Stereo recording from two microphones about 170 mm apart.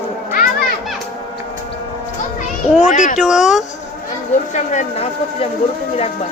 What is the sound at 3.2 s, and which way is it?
Speech, 5° right (ahead or behind).